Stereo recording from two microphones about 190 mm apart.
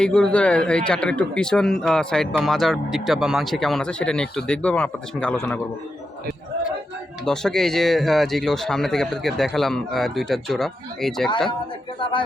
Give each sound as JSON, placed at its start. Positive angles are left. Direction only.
{"t": 0.0, "sound": "speech", "side_deg": 5}
{"t": 7.3, "sound": "speech", "side_deg": 5}
{"t": 11.9, "sound": "speech", "side_deg": 25}